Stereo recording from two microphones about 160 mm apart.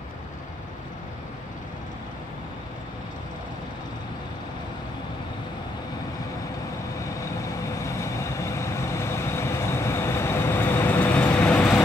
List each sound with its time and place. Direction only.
7.6 s vehicle: 20° left (ahead or behind)